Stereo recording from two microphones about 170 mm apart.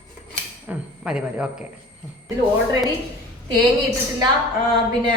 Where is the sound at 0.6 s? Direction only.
5° right (ahead or behind).